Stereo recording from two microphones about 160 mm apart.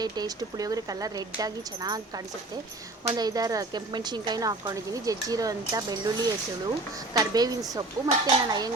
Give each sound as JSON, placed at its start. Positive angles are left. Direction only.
{"t": 0.0, "sound": "speech", "side_deg": -25}